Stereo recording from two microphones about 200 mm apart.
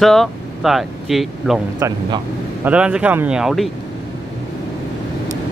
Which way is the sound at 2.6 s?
5° right (ahead or behind).